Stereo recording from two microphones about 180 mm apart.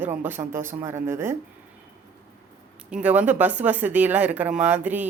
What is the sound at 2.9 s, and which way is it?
Speech, 10° right (ahead or behind).